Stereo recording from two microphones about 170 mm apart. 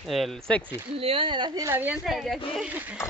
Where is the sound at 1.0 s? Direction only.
30° right (ahead or behind); by 2.9 s 10° right (ahead or behind).